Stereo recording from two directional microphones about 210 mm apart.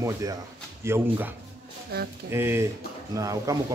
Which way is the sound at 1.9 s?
50° right (ahead or behind).